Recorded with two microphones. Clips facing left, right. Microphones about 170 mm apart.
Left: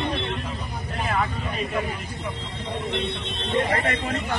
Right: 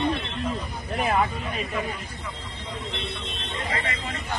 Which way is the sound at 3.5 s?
65° left (ahead or behind).